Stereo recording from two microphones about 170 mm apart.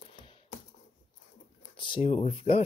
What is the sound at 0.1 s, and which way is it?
Typing, 30° left (ahead or behind).